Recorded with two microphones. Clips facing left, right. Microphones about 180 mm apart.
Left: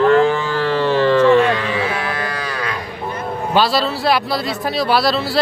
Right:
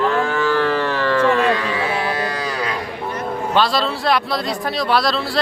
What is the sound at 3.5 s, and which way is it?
A man's voice, 5° left (ahead or behind).